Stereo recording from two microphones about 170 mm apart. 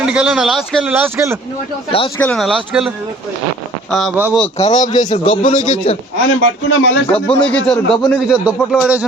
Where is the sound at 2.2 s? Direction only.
5° left (ahead or behind).